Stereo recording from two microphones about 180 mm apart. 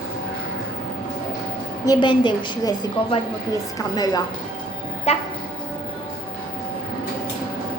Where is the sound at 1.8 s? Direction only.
25° left (ahead or behind).